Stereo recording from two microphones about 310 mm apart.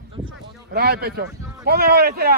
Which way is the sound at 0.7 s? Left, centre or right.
Right.